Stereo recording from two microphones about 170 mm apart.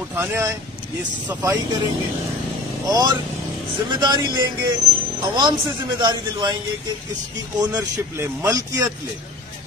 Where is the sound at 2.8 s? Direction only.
20° right (ahead or behind).